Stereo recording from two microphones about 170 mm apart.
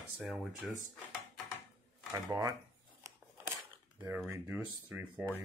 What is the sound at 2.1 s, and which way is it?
Speech, 20° right (ahead or behind).